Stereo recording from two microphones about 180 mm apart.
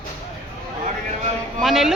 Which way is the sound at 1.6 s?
Centre (ahead or behind).